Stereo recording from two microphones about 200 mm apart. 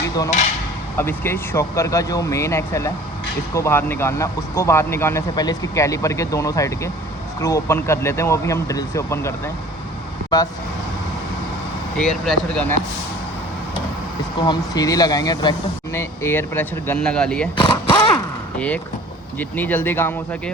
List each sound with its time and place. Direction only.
0.9 s speech: 10° left (ahead or behind)
11.9 s speech: centre (ahead or behind)
14.3 s speech: 20° left (ahead or behind); by 17.5 s 5° left (ahead or behind)
17.6 s a sound: 25° left (ahead or behind)
19.4 s speech: 10° left (ahead or behind)